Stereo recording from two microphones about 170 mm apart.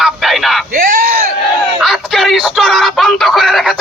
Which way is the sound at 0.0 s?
Centre (ahead or behind).